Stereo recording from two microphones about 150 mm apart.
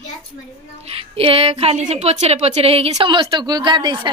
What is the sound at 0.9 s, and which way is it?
A woman's voice, 40° right (ahead or behind).